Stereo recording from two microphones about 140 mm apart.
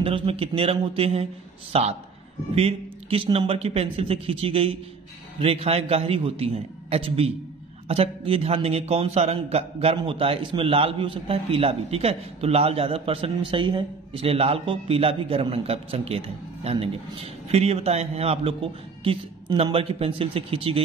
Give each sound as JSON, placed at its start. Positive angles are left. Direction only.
{"t": 0.0, "sound": "a man's voice", "side_deg": -40}